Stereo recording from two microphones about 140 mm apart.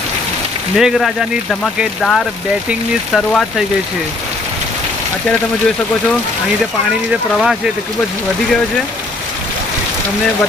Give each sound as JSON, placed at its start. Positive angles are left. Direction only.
{"t": 0.7, "sound": "speech", "side_deg": 0}
{"t": 7.3, "sound": "speech", "side_deg": -5}